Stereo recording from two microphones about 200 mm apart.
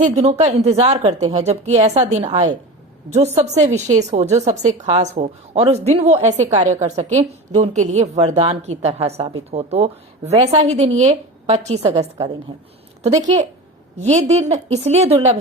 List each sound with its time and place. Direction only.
0.0 s a woman's voice: 35° right (ahead or behind)
13.1 s a woman's voice: 35° right (ahead or behind)